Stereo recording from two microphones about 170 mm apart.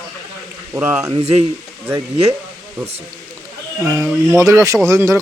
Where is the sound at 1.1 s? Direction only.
35° right (ahead or behind).